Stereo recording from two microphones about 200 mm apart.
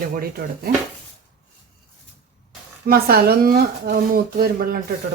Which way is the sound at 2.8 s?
50° right (ahead or behind).